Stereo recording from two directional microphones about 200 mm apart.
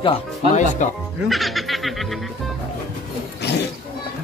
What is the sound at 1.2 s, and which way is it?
Music, centre (ahead or behind).